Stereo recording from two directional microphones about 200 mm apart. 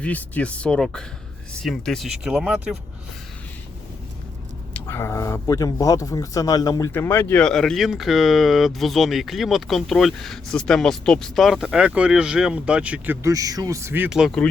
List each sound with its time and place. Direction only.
0.0 s speech: 5° left (ahead or behind)
4.9 s speech: 10° left (ahead or behind)